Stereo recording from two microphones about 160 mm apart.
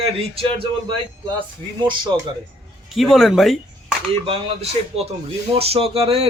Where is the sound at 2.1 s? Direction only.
30° right (ahead or behind).